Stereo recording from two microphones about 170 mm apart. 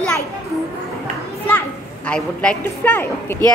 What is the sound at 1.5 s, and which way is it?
A child's voice, 10° left (ahead or behind).